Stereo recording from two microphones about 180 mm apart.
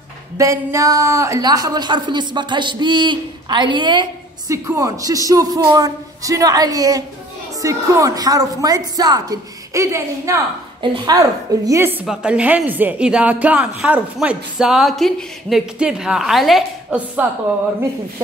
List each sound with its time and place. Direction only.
0.4 s a woman's voice: 15° right (ahead or behind)
10.8 s a woman's voice: 25° right (ahead or behind)
11.6 s a woman's voice: 15° right (ahead or behind)